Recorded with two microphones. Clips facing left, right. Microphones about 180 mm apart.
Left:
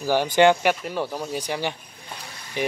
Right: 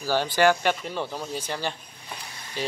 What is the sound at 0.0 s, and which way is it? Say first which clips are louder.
Speech: left 4 dB; 15° left (ahead or behind).